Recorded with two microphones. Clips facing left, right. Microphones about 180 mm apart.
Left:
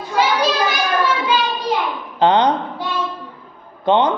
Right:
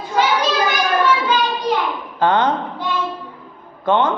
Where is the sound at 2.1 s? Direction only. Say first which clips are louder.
Left 2 dB; 20° left (ahead or behind).